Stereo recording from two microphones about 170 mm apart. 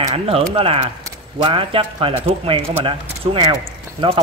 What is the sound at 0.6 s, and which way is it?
Speech, 35° right (ahead or behind).